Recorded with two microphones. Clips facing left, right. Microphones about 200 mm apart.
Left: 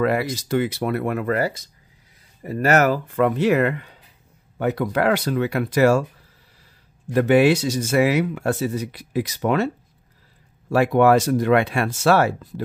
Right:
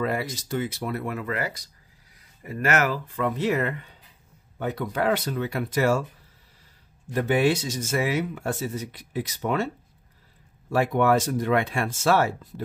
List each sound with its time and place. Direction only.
0.0 s speech: 75° left (ahead or behind); by 1.3 s 60° left (ahead or behind)
2.4 s speech: 35° left (ahead or behind)
3.2 s speech: 70° left (ahead or behind)
7.1 s speech: 70° left (ahead or behind)
10.7 s speech: 80° left